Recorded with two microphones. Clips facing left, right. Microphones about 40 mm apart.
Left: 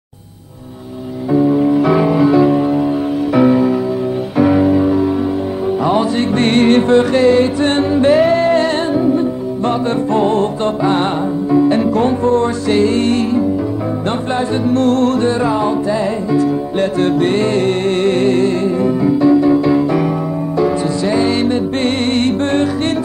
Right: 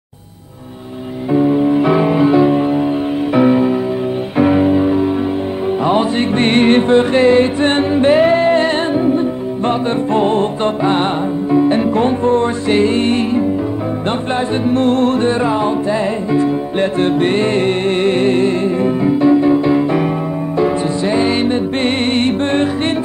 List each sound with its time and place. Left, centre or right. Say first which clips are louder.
1.3 s music: even; right